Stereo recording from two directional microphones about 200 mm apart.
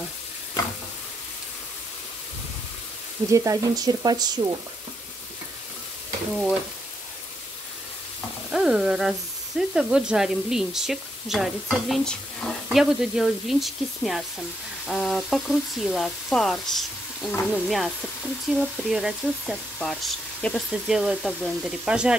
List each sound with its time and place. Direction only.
3.3 s speech: 15° right (ahead or behind)
8.5 s speech: 5° right (ahead or behind)